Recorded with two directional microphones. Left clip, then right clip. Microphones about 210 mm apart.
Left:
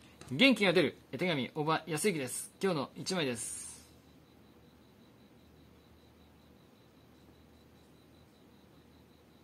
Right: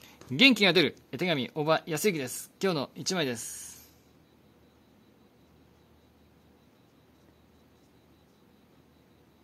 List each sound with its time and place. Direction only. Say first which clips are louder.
0.3 s speech: right 5 dB; 50° right (ahead or behind)